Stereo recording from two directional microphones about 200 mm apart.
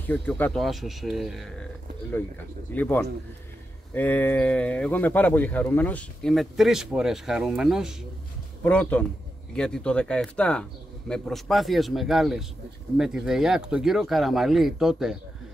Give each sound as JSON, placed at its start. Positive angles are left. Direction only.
{"t": 0.0, "sound": "speech", "side_deg": 10}
{"t": 2.7, "sound": "a man's voice", "side_deg": 10}